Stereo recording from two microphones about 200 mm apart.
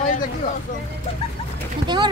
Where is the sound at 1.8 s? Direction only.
20° right (ahead or behind).